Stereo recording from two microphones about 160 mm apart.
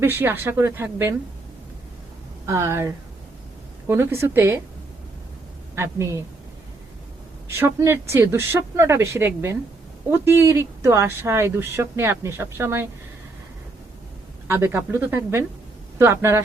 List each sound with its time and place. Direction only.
0.0 s speech: 15° right (ahead or behind)
2.5 s speech: 15° right (ahead or behind)
5.7 s speech: 15° right (ahead or behind)
7.4 s speech: 15° right (ahead or behind)
14.4 s speech: 15° right (ahead or behind)